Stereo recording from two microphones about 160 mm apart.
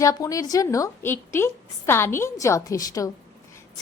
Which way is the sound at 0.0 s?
20° left (ahead or behind).